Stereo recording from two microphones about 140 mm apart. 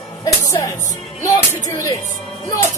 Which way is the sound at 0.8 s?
25° left (ahead or behind).